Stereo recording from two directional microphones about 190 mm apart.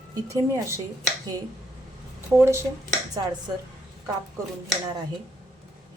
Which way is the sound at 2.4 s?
15° right (ahead or behind).